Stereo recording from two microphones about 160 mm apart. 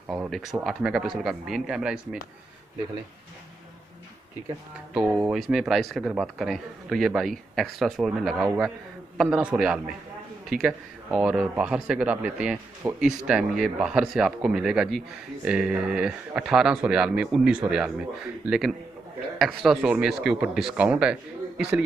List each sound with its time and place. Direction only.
0.1 s a man's voice: 5° right (ahead or behind)
4.9 s a man's voice: 5° right (ahead or behind)